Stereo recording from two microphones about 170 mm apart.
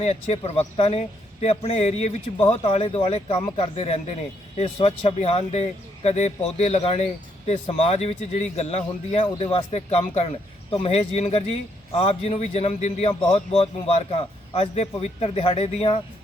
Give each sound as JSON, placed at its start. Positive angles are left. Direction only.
{"t": 0.0, "sound": "speech", "side_deg": 40}